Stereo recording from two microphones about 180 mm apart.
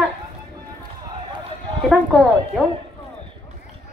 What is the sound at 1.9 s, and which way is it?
Speech, centre (ahead or behind).